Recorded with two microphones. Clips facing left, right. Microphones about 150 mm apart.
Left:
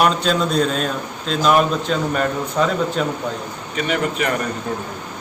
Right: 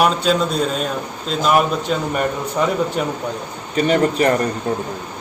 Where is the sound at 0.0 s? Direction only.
5° right (ahead or behind).